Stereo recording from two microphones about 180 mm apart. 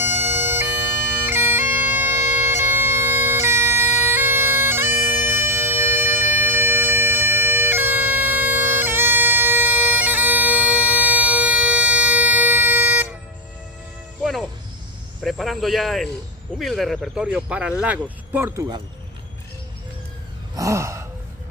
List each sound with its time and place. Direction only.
0.0 s bagpipes: 10° right (ahead or behind)
14.2 s music: centre (ahead or behind)
15.2 s cricket: centre (ahead or behind)
16.5 s speech: centre (ahead or behind); by 18.8 s 15° right (ahead or behind)
20.5 s gasp: 15° right (ahead or behind)